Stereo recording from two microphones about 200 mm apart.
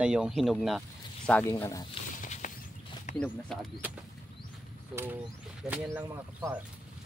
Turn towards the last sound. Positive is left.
turn(degrees=-10)  # may be behind; listen again after turning